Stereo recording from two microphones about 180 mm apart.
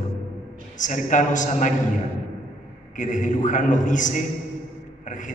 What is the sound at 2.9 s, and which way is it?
A man's voice, 45° left (ahead or behind).